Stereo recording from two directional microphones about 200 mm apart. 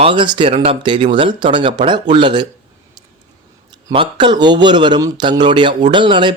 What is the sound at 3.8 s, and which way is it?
Speech, 25° right (ahead or behind).